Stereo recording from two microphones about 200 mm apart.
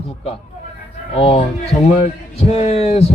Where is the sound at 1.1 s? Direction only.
30° left (ahead or behind).